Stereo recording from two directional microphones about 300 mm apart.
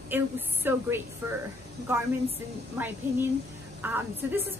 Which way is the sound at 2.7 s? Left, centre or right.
Centre.